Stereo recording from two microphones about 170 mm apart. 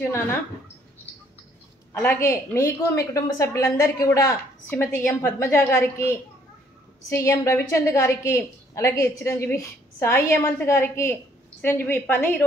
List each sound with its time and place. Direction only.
2.0 s a woman's voice: 15° left (ahead or behind)
7.1 s a woman's voice: 15° left (ahead or behind)